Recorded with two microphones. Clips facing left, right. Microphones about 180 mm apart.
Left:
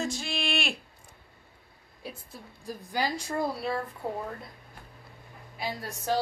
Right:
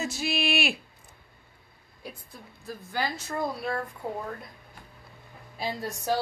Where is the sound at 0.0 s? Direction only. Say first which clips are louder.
Right 3 dB; 5° right (ahead or behind).